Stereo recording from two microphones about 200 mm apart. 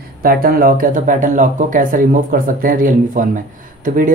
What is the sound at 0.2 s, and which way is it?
Speech, 45° right (ahead or behind).